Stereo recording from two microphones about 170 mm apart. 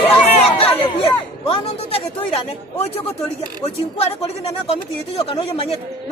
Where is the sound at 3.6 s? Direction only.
35° left (ahead or behind).